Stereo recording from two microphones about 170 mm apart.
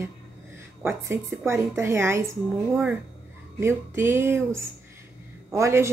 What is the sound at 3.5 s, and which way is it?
A woman's voice, 15° right (ahead or behind).